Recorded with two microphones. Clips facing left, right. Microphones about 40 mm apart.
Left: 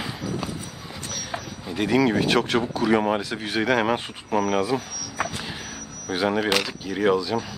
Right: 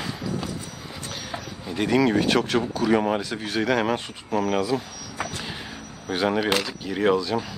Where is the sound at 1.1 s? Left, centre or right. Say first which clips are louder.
Left 2 dB; centre.